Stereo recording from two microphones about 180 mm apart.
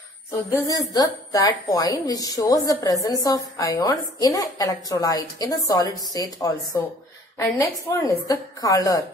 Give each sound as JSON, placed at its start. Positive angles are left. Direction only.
{"t": 0.3, "sound": "a woman's voice", "side_deg": 15}